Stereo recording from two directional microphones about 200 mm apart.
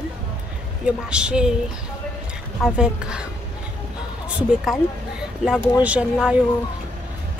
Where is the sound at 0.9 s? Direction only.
5° right (ahead or behind).